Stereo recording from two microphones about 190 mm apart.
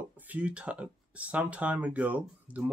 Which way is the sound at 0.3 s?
5° right (ahead or behind).